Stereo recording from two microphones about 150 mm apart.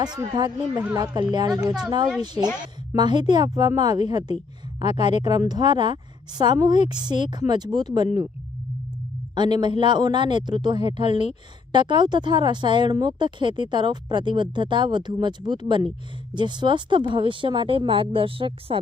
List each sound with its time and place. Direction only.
0.2 s a woman's voice: 25° right (ahead or behind)
9.3 s speech: 30° right (ahead or behind)